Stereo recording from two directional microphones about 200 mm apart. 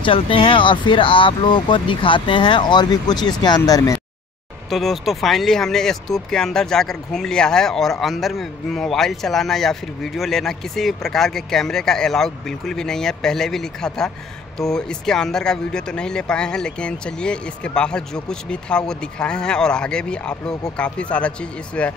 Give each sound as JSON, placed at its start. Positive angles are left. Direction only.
{"t": 0.0, "sound": "speech", "side_deg": 25}
{"t": 4.6, "sound": "speech", "side_deg": 0}